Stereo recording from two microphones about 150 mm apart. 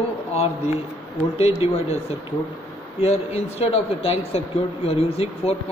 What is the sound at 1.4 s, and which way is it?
Speech, 45° left (ahead or behind).